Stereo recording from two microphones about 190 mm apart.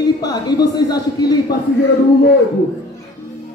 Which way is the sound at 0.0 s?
20° left (ahead or behind).